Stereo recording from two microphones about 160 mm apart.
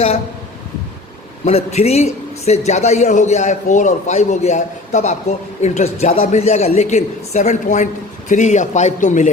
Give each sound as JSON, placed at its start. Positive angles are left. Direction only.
{"t": 1.5, "sound": "a man's voice", "side_deg": 40}